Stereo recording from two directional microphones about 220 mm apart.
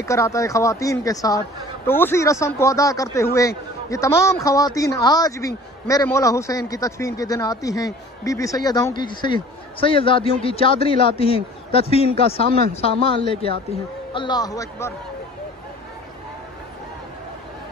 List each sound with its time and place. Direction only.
0.0 s a man's voice: 15° left (ahead or behind)
12.4 s speech: 45° right (ahead or behind)
12.8 s a man's voice: 25° left (ahead or behind)